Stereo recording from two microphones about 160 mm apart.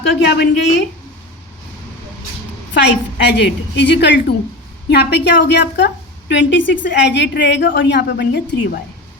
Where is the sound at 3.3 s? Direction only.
90° left.